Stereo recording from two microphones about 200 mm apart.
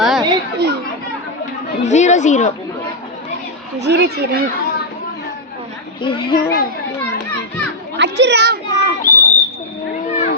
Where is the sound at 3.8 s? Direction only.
60° right (ahead or behind).